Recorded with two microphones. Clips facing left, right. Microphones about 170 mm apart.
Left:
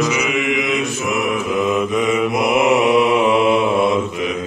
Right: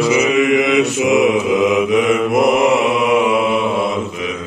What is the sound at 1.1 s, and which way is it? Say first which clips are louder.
Mantra: right 6 dB; 90° right.